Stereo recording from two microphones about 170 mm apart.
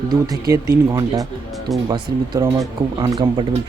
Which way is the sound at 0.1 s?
20° right (ahead or behind).